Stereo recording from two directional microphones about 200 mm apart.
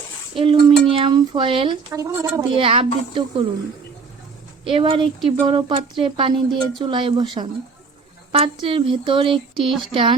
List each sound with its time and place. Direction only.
0.3 s speech: 25° right (ahead or behind)
2.5 s speech: 25° right (ahead or behind)
4.7 s speech: 25° right (ahead or behind)